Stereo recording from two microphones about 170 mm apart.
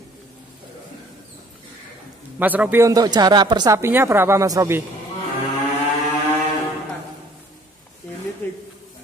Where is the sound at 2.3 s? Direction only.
10° right (ahead or behind).